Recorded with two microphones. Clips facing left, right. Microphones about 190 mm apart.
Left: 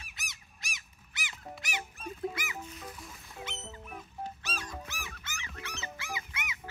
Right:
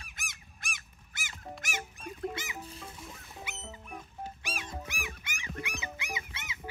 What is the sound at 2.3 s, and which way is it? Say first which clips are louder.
Music: even; 20° right (ahead or behind).